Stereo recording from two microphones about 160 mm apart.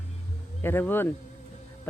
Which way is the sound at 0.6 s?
15° left (ahead or behind).